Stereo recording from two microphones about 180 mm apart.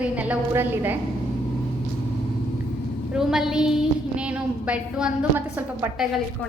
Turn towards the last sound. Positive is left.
turn(degrees=-10)  # may be behind; listen again after turning